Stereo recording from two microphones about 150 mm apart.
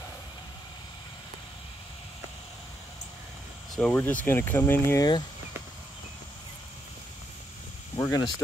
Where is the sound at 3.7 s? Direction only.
10° left (ahead or behind).